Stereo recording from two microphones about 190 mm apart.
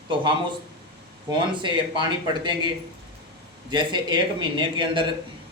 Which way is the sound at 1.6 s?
25° right (ahead or behind).